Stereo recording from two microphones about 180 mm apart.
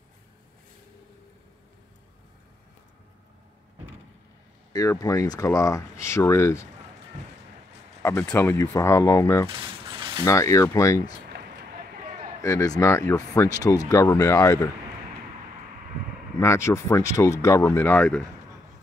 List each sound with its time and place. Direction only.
4.7 s speech: 20° left (ahead or behind)
8.0 s speech: 15° left (ahead or behind)
9.5 s a sound: 30° right (ahead or behind)
10.2 s speech: 15° left (ahead or behind)
12.4 s speech: 15° left (ahead or behind)
16.3 s speech: 15° left (ahead or behind)